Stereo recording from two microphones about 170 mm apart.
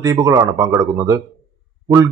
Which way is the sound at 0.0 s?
20° right (ahead or behind).